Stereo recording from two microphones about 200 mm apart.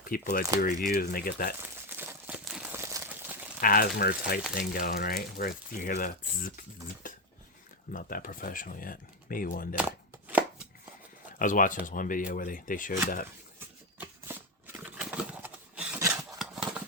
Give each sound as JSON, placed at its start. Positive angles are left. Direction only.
{"t": 0.1, "sound": "speech", "side_deg": 45}
{"t": 1.9, "sound": "crumpling", "side_deg": -10}
{"t": 2.7, "sound": "a sound", "side_deg": -10}
{"t": 3.6, "sound": "speech", "side_deg": 45}
{"t": 7.0, "sound": "a sound", "side_deg": 40}
{"t": 7.9, "sound": "speech", "side_deg": 45}
{"t": 11.3, "sound": "speech", "side_deg": 40}
{"t": 14.0, "sound": "shuffling cards", "side_deg": -10}